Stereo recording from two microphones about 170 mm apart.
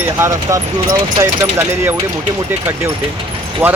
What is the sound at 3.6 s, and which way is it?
Speech, 15° right (ahead or behind).